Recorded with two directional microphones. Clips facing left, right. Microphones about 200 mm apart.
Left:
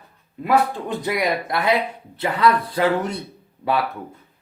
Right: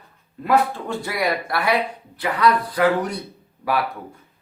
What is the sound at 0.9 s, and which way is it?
Speech, 20° left (ahead or behind).